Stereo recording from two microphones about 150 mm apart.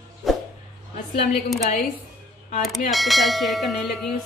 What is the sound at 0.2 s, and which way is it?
Dog, centre (ahead or behind).